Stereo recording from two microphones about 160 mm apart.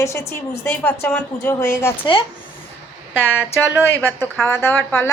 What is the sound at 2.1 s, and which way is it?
Speech, 30° left (ahead or behind).